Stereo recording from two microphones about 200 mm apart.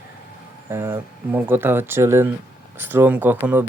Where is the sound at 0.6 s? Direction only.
10° right (ahead or behind).